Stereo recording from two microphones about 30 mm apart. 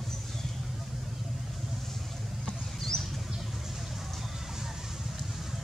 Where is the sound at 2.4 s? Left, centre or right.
Centre.